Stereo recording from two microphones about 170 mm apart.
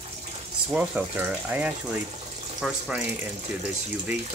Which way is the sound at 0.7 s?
10° right (ahead or behind).